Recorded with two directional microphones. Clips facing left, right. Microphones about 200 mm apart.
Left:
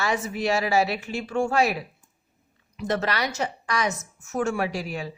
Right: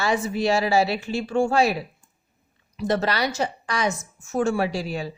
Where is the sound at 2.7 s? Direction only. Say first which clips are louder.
Right 3 dB; 35° right (ahead or behind).